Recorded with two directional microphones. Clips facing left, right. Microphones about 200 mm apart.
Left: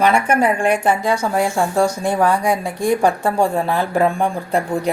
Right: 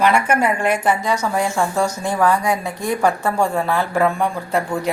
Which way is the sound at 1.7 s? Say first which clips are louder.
Left 3 dB; 30° left (ahead or behind).